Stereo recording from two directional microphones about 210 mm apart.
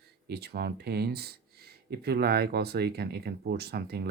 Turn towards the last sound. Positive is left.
turn(degrees=-50)  # may be behind; listen again after turning